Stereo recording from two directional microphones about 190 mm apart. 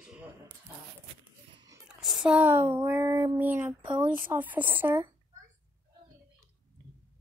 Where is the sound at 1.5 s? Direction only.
20° right (ahead or behind).